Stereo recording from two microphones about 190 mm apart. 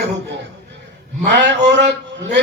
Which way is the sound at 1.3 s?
65° right (ahead or behind).